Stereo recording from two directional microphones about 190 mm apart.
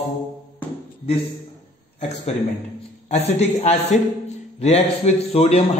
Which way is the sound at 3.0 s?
35° left (ahead or behind).